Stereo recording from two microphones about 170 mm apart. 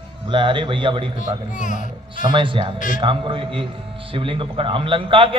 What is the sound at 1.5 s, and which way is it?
Speech, 50° left (ahead or behind).